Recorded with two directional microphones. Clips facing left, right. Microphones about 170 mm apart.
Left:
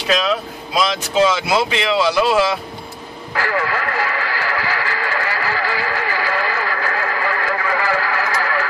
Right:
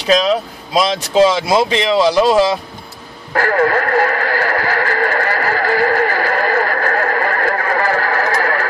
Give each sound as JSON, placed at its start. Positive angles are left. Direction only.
{"t": 0.0, "sound": "speech", "side_deg": -35}
{"t": 3.3, "sound": "radio", "side_deg": -50}